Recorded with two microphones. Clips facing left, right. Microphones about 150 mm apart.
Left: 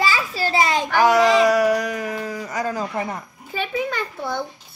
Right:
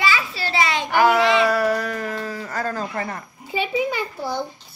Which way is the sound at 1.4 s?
15° left (ahead or behind).